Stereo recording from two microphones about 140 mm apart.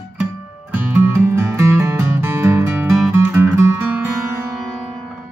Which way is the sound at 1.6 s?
20° right (ahead or behind).